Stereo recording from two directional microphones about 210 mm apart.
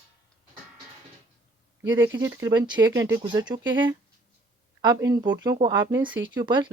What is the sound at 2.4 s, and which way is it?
Speech, 20° right (ahead or behind).